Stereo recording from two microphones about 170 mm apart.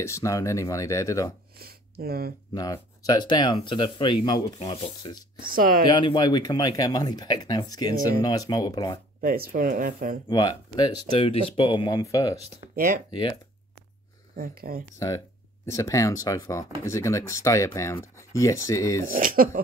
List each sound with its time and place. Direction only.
0.0 s speech: 20° left (ahead or behind)
1.6 s speech: 65° right (ahead or behind)
2.5 s speech: 20° left (ahead or behind)
5.4 s speech: 55° right (ahead or behind)
5.9 s speech: 25° left (ahead or behind)
9.2 s speech: 60° right (ahead or behind)
10.2 s speech: 25° left (ahead or behind)
14.3 s speech: 60° right (ahead or behind)
15.0 s speech: 20° left (ahead or behind)
19.1 s speech: 55° right (ahead or behind)